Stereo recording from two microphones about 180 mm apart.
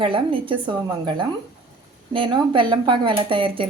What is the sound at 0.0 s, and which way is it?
A woman's voice, 30° right (ahead or behind).